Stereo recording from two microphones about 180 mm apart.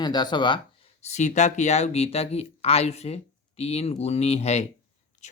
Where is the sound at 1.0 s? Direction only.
40° left (ahead or behind).